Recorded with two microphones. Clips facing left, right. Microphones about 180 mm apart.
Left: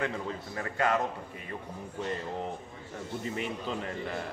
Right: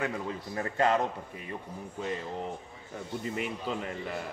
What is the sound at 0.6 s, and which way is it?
Speech, 30° right (ahead or behind).